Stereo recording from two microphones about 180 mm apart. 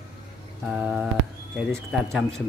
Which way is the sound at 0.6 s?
5° right (ahead or behind).